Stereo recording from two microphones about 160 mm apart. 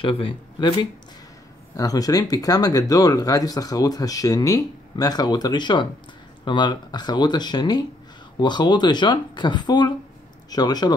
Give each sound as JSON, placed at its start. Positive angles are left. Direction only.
{"t": 0.0, "sound": "speech", "side_deg": 35}